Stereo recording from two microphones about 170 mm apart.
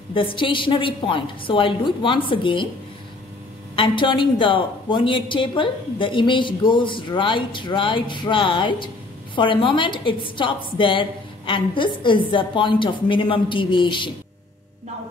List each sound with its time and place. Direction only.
0.1 s a woman's voice: 30° left (ahead or behind)
3.7 s a woman's voice: 30° left (ahead or behind)